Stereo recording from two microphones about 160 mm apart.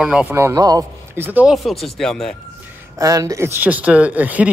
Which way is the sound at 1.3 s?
5° right (ahead or behind).